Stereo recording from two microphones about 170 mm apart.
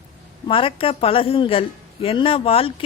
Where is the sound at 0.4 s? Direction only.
30° left (ahead or behind).